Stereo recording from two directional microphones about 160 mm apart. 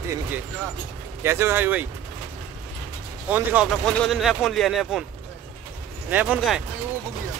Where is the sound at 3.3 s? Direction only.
10° right (ahead or behind).